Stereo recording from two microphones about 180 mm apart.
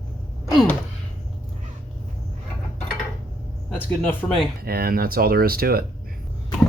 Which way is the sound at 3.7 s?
10° left (ahead or behind).